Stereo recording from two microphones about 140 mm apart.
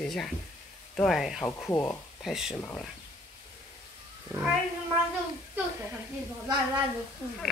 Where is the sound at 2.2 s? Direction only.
5° right (ahead or behind).